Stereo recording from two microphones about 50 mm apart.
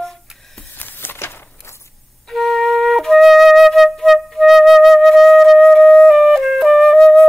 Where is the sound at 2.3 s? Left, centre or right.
Centre.